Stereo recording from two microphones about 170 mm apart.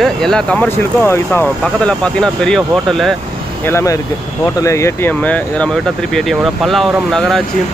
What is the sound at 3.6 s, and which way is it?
Speech, 15° left (ahead or behind).